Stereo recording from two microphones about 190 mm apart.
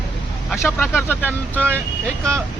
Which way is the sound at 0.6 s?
10° left (ahead or behind).